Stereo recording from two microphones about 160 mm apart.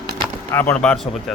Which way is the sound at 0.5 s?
10° left (ahead or behind).